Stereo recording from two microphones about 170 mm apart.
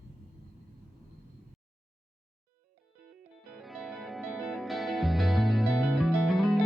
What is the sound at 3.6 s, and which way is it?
Music, centre (ahead or behind).